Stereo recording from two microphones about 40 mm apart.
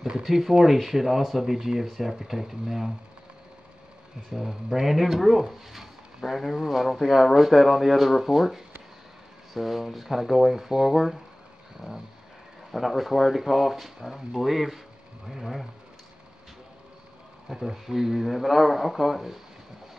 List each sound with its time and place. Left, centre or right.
0.2 s speech: centre
4.3 s speech: centre
11.8 s vehicle: right
12.7 s speech: centre
17.5 s speech: centre